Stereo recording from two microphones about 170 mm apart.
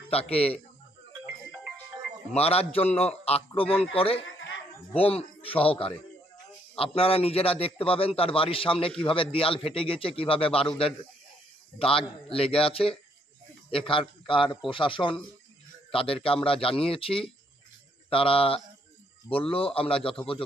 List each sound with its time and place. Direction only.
0.1 s a man's voice: 35° left (ahead or behind)
2.3 s a man's voice: 35° left (ahead or behind)
11.8 s a man's voice: 35° left (ahead or behind)